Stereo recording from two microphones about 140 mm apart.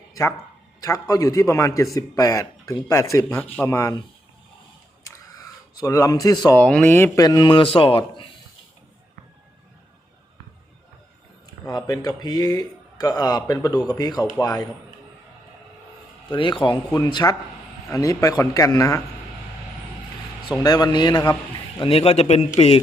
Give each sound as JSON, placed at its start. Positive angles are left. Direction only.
{"t": 0.1, "sound": "a sound", "side_deg": 25}
{"t": 0.8, "sound": "speech", "side_deg": 25}
{"t": 5.7, "sound": "speech", "side_deg": 25}
{"t": 6.5, "sound": "speech", "side_deg": 10}
{"t": 7.2, "sound": "speech", "side_deg": 30}
{"t": 11.7, "sound": "speech", "side_deg": 30}
{"t": 16.3, "sound": "speech", "side_deg": 35}
{"t": 20.6, "sound": "speech", "side_deg": 25}
{"t": 21.8, "sound": "speech", "side_deg": 45}